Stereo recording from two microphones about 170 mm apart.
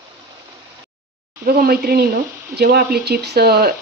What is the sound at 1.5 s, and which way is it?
Speech, 65° right (ahead or behind).